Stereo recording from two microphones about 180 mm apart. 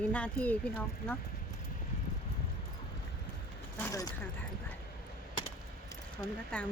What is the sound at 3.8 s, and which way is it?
Speech, 15° left (ahead or behind).